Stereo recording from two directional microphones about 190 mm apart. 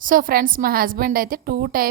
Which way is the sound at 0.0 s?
45° right (ahead or behind).